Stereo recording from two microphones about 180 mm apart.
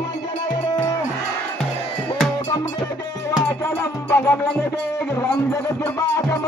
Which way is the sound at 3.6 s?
15° left (ahead or behind).